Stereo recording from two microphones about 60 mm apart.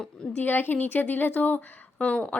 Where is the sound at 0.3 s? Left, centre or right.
Left.